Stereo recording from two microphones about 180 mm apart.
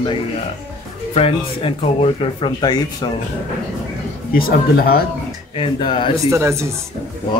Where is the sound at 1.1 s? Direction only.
30° left (ahead or behind).